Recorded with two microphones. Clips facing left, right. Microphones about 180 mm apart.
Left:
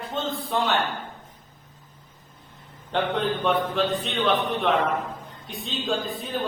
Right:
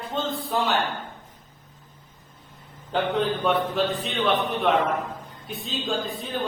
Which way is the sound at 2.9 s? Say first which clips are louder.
Right 1 dB; centre (ahead or behind).